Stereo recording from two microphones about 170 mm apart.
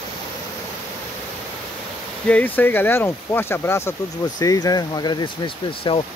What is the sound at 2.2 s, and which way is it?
Speech, 10° left (ahead or behind).